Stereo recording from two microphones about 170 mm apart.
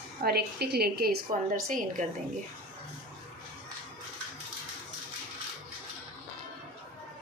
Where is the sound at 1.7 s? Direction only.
50° right (ahead or behind).